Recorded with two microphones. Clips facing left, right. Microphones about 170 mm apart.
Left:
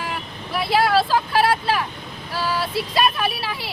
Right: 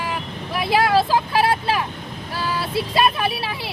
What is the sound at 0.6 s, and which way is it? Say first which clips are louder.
Speech: right 1 dB; 15° right (ahead or behind).